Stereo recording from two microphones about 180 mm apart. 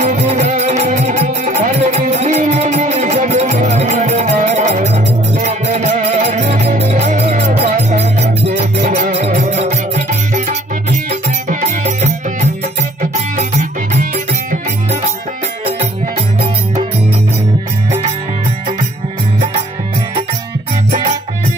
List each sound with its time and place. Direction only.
0.0 s music: 40° right (ahead or behind)